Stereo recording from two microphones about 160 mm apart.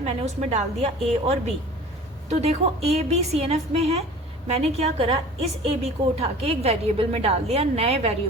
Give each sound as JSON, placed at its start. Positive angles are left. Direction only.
{"t": 0.0, "sound": "a woman's voice", "side_deg": -45}